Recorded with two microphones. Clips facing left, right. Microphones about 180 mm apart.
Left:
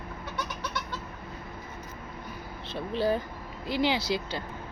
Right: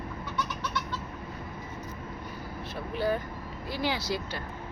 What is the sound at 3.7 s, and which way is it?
Speech, 20° left (ahead or behind).